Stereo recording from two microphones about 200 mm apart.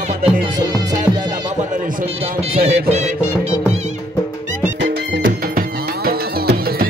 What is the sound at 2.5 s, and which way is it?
Music, 35° right (ahead or behind).